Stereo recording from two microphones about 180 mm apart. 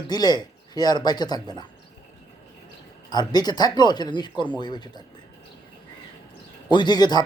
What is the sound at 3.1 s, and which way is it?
Speech, 25° left (ahead or behind).